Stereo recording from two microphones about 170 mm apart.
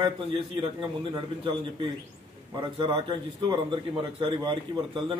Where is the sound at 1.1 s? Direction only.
30° right (ahead or behind).